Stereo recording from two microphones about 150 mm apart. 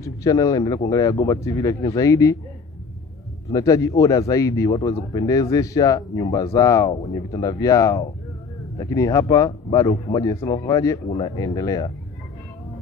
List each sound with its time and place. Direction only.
0.0 s speech: 20° left (ahead or behind)
3.5 s speech: 20° left (ahead or behind)
11.1 s speech: 40° left (ahead or behind)
11.3 s speech: 25° left (ahead or behind)